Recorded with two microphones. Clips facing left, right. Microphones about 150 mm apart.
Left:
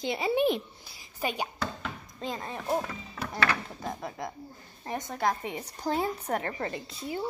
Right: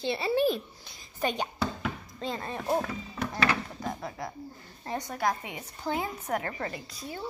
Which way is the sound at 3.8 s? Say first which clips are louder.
Even; 20° left (ahead or behind).